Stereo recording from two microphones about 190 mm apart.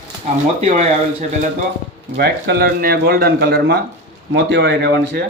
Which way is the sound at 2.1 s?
55° right (ahead or behind).